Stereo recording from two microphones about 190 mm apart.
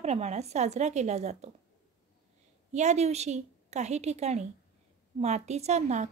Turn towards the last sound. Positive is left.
turn(degrees=-35)  # may be behind; listen again after turning